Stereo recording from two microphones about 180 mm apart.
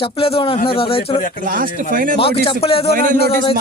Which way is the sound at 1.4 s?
50° right (ahead or behind).